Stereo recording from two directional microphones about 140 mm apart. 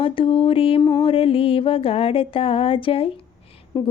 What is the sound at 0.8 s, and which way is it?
Music, 30° left (ahead or behind).